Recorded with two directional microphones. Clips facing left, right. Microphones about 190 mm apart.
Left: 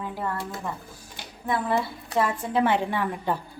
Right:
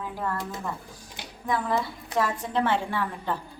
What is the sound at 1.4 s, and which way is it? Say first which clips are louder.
A woman's voice: left 1 dB; 5° left (ahead or behind).